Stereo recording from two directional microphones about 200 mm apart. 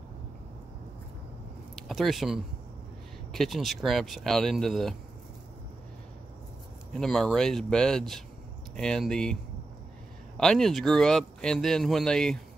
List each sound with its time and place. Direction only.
1.9 s speech: centre (ahead or behind)
6.9 s speech: centre (ahead or behind)